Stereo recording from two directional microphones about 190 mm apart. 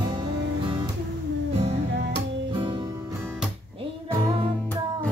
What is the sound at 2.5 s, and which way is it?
Music, 25° right (ahead or behind).